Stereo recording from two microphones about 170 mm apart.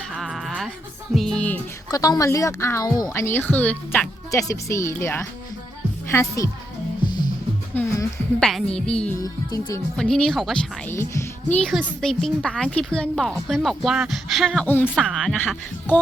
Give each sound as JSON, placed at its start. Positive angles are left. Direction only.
{"t": 0.1, "sound": "music", "side_deg": 0}
{"t": 1.9, "sound": "speech", "side_deg": 20}
{"t": 4.3, "sound": "speech", "side_deg": 20}
{"t": 7.7, "sound": "a sound", "side_deg": 15}
{"t": 8.4, "sound": "speech", "side_deg": 5}
{"t": 9.1, "sound": "music", "side_deg": 20}
{"t": 10.0, "sound": "speech", "side_deg": 5}
{"t": 10.8, "sound": "speech", "side_deg": 15}